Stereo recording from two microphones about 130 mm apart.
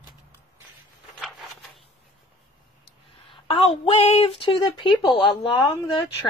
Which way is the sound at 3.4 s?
50° left (ahead or behind).